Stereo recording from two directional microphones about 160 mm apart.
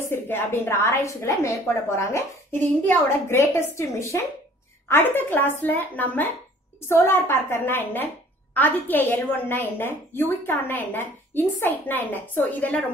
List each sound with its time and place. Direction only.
0.0 s a woman's voice: 15° left (ahead or behind)